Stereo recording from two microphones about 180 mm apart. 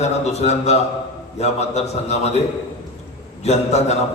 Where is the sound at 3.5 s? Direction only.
40° left (ahead or behind).